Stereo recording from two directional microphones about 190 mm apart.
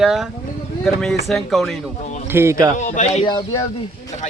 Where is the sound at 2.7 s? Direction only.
40° left (ahead or behind).